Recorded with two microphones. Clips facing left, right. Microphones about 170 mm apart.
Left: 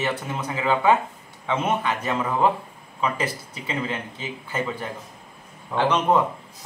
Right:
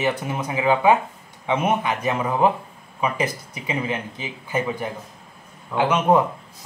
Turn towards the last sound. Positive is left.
turn(degrees=-10)  # may be behind; listen again after turning